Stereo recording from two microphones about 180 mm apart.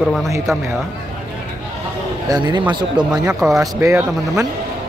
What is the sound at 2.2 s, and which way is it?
Speech, 25° right (ahead or behind).